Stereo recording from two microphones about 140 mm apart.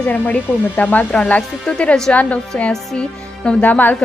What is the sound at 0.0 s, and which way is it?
Speech, 10° left (ahead or behind).